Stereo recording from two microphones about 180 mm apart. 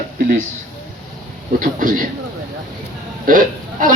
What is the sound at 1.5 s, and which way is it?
Speech, 50° right (ahead or behind).